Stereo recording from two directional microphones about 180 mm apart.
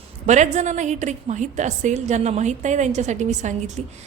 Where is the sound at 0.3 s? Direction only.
40° right (ahead or behind).